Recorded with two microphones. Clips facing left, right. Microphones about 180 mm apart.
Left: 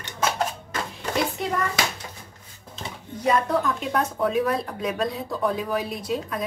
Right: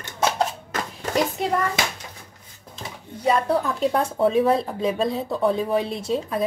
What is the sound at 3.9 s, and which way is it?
Speech, 30° right (ahead or behind).